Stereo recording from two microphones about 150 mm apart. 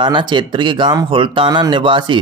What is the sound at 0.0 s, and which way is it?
Speech, 30° right (ahead or behind).